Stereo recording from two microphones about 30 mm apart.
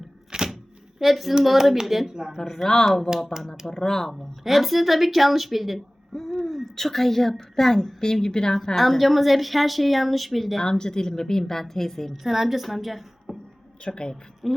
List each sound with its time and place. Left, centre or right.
0.3 s a sound: right
0.9 s a woman's voice: centre
2.4 s a woman's voice: centre
4.4 s speech: centre
6.4 s hoot: centre
6.7 s a woman's voice: centre
8.7 s speech: centre
10.6 s a woman's voice: left
12.2 s speech: centre
13.8 s a woman's voice: left
14.4 s speech: centre